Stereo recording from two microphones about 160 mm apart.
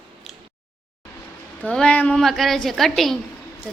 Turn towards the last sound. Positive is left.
turn(degrees=0)  # may be behind; listen again after turning